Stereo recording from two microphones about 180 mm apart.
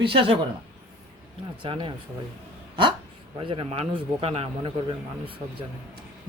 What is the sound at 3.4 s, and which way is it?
A man's voice, 30° right (ahead or behind).